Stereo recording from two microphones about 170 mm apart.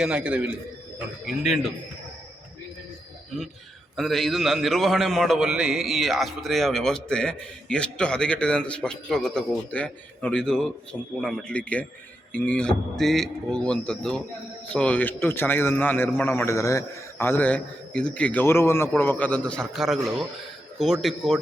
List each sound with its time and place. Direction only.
0.0 s a man's voice: 5° right (ahead or behind)
3.9 s a man's voice: centre (ahead or behind)